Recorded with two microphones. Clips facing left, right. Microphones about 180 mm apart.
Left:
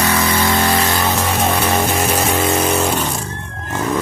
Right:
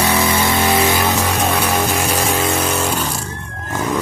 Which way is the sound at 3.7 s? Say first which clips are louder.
Left 1 dB; 10° left (ahead or behind).